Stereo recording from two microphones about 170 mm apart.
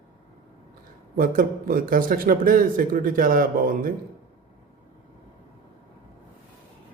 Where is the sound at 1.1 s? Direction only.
55° right (ahead or behind).